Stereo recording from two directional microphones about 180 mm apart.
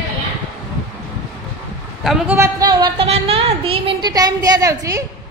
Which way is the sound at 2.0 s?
10° right (ahead or behind).